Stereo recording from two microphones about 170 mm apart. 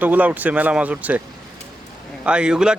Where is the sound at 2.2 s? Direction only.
5° right (ahead or behind).